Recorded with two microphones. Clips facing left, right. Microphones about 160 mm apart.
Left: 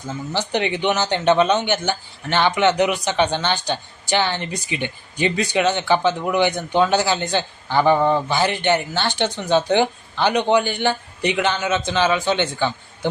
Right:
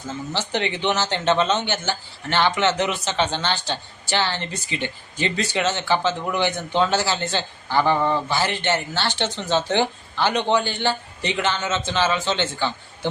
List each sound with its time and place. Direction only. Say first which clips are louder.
0.3 s a man's voice: left 4 dB; 15° left (ahead or behind)